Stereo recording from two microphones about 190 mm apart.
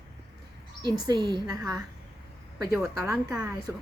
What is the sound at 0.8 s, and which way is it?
Speech, 20° right (ahead or behind).